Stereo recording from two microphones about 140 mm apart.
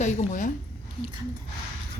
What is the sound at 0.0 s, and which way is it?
Speech, 60° left (ahead or behind).